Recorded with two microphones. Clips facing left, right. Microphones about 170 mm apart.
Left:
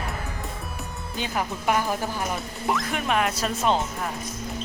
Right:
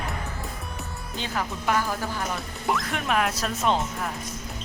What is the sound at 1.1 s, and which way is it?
Speech, 15° left (ahead or behind).